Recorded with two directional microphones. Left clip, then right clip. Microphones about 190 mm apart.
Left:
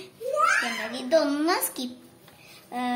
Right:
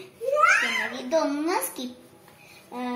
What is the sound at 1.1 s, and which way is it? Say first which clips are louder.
Speech: left 3 dB; 25° left (ahead or behind).